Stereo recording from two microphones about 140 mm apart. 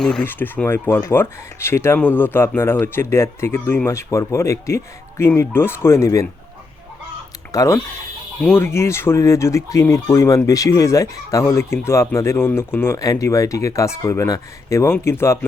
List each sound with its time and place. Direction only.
0.0 s speech: 10° left (ahead or behind)
7.5 s speech: 25° left (ahead or behind)